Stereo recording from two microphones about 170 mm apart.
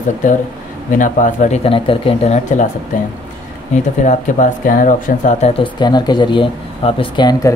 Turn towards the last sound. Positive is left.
turn(degrees=25)  # may be behind; listen again after turning